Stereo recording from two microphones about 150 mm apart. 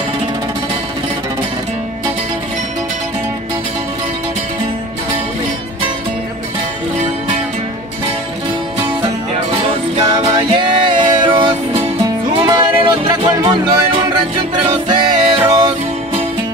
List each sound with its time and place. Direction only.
9.6 s music: 35° right (ahead or behind)
14.9 s music: 30° right (ahead or behind)